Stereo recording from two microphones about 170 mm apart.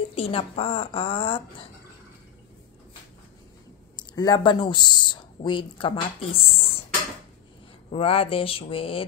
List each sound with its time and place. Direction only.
0.1 s speech: 35° left (ahead or behind)
3.9 s speech: 25° left (ahead or behind)
7.9 s speech: 35° left (ahead or behind)